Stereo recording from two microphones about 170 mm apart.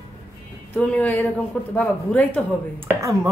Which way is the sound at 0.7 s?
10° left (ahead or behind).